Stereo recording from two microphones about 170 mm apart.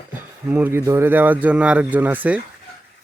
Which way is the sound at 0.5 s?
10° right (ahead or behind).